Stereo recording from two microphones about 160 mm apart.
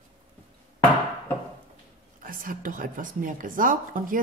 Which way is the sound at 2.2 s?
60° right (ahead or behind).